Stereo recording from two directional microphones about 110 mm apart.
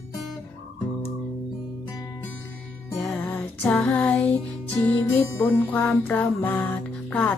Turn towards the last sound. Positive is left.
turn(degrees=15)  # may be behind; listen again after turning